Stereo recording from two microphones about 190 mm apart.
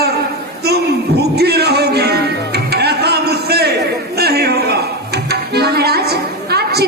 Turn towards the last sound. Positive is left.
turn(degrees=-60)  # may be behind; listen again after turning